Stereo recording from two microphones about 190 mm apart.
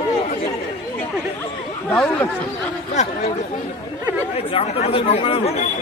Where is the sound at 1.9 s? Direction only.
5° left (ahead or behind).